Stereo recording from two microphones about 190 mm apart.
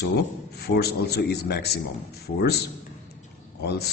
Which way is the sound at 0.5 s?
60° left (ahead or behind).